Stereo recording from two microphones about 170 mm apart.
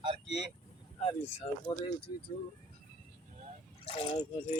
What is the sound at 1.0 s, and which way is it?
Speech, 40° left (ahead or behind).